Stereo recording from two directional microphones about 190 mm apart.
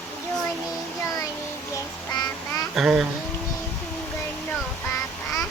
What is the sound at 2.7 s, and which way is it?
Speech, 5° right (ahead or behind).